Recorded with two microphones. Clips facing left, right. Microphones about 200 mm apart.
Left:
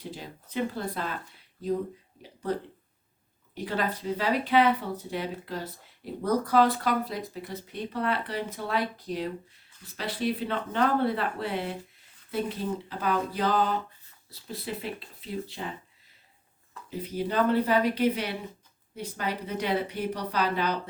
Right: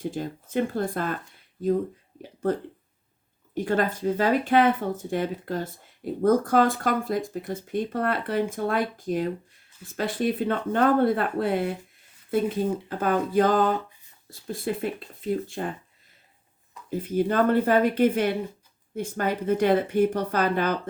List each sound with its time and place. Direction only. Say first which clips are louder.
0.0 s speech: right 9 dB; 50° right (ahead or behind)
2.4 s speech: right 5 dB; 50° right (ahead or behind)
16.9 s speech: right 6 dB; 50° right (ahead or behind)